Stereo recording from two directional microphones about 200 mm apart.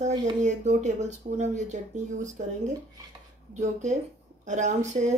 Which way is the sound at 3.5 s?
35° right (ahead or behind).